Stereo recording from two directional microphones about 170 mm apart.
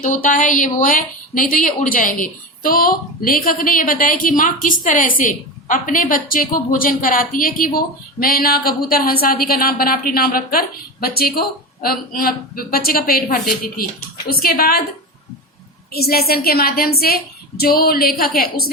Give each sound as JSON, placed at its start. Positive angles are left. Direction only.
{"t": 0.0, "sound": "a woman's voice", "side_deg": 50}
{"t": 15.9, "sound": "a woman's voice", "side_deg": 65}